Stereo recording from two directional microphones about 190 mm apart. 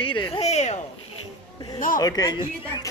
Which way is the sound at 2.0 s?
20° left (ahead or behind).